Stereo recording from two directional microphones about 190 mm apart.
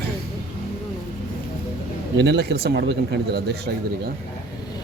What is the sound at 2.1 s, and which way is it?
Speech, 60° right (ahead or behind).